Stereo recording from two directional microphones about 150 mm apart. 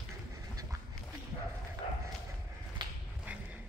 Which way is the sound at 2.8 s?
30° right (ahead or behind).